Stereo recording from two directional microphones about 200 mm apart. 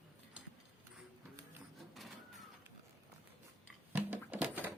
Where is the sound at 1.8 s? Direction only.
Centre (ahead or behind).